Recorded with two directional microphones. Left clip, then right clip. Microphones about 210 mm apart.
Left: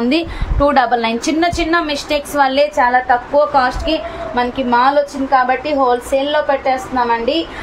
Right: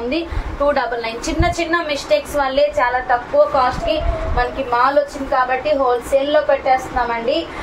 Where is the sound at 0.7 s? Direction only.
55° left (ahead or behind).